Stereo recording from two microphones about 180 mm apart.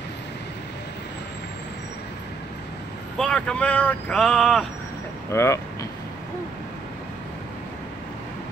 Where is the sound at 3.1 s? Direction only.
5° left (ahead or behind).